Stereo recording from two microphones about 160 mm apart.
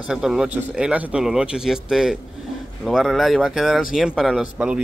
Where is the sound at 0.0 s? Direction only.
5° right (ahead or behind).